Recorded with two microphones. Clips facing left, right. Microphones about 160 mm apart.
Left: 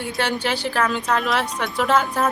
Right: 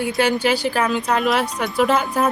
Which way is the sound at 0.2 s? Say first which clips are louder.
Right 5 dB; 10° right (ahead or behind).